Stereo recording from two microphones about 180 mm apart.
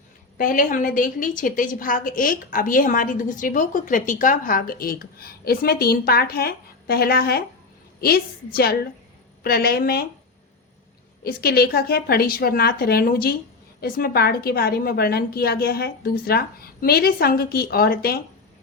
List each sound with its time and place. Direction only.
0.3 s a woman's voice: 50° left (ahead or behind)
11.2 s a woman's voice: 60° left (ahead or behind)